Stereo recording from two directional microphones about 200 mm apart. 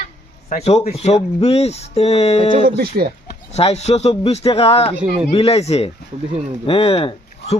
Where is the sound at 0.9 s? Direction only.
35° left (ahead or behind).